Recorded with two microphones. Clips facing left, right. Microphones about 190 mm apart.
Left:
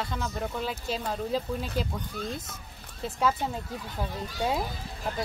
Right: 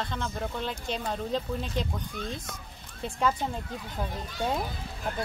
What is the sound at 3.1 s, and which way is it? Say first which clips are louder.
Speech: left 1 dB; 5° left (ahead or behind).